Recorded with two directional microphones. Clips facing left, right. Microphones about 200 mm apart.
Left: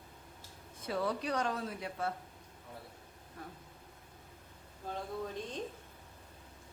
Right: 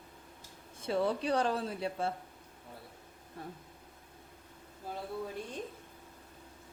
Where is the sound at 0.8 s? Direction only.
25° right (ahead or behind).